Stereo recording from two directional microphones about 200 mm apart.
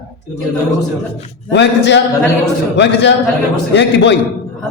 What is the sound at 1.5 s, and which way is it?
A man's voice, 60° left (ahead or behind).